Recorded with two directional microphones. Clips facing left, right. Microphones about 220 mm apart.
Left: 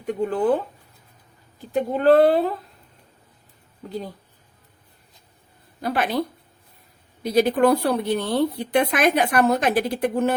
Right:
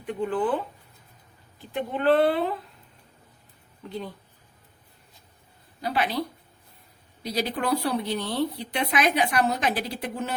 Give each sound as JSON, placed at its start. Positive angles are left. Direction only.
{"t": 0.0, "sound": "speech", "side_deg": 40}
{"t": 1.7, "sound": "speech", "side_deg": 40}
{"t": 3.8, "sound": "speech", "side_deg": 40}
{"t": 5.8, "sound": "speech", "side_deg": 50}